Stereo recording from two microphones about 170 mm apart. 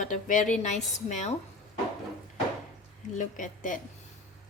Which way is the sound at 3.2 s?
50° left (ahead or behind).